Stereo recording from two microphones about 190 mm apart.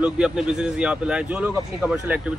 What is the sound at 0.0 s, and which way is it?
A man's voice, 5° right (ahead or behind).